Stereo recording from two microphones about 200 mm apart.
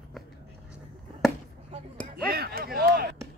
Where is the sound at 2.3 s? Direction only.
50° right (ahead or behind).